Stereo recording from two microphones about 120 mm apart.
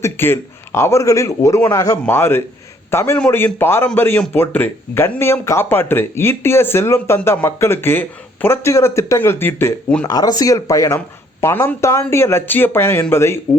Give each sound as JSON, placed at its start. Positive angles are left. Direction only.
{"t": 0.0, "sound": "a man's voice", "side_deg": 20}
{"t": 10.1, "sound": "speech", "side_deg": 30}